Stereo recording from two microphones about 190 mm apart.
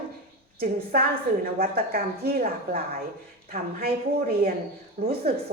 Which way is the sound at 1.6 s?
55° right (ahead or behind).